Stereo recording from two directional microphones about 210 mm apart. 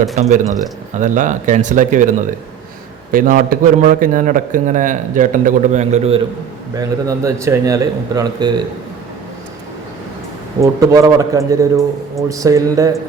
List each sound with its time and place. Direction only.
0.4 s a man's voice: 15° right (ahead or behind)
0.9 s a man's voice: 35° right (ahead or behind)
6.7 s a man's voice: 15° right (ahead or behind)
10.6 s a man's voice: 15° right (ahead or behind)